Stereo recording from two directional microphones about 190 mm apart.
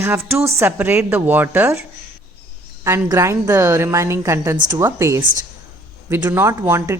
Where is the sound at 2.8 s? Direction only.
15° right (ahead or behind).